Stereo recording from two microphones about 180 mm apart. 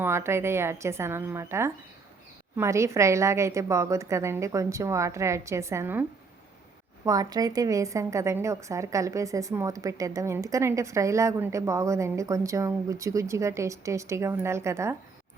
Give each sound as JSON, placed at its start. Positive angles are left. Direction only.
{"t": 0.0, "sound": "a woman's voice", "side_deg": -15}